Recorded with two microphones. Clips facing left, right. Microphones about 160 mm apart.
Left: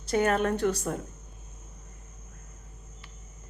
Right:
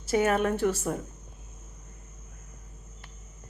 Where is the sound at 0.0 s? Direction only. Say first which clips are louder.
Right 1 dB; 5° right (ahead or behind).